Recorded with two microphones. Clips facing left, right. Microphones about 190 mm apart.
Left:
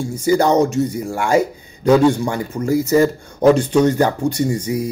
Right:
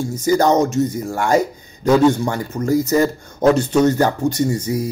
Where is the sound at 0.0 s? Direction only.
15° left (ahead or behind).